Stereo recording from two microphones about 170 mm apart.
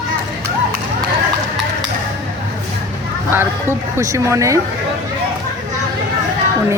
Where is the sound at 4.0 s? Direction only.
20° right (ahead or behind).